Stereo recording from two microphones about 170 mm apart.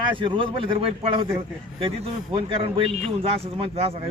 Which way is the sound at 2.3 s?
30° right (ahead or behind).